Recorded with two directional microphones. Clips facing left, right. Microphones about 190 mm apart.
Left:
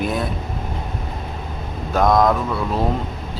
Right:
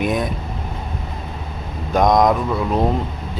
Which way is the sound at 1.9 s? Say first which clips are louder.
Right 1 dB; 15° right (ahead or behind).